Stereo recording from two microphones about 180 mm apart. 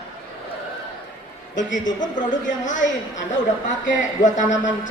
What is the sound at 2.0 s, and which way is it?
A woman's voice, 45° left (ahead or behind).